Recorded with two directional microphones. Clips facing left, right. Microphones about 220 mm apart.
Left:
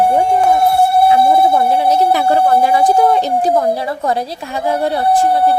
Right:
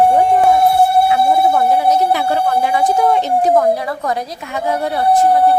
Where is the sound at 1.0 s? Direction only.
30° left (ahead or behind).